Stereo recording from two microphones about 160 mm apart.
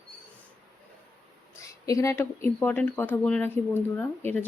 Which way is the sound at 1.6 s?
20° left (ahead or behind).